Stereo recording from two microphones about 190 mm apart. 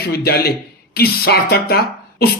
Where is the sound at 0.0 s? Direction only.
55° left (ahead or behind).